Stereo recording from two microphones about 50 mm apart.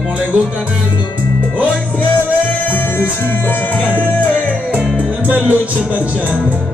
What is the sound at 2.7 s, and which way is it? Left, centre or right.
Music, left.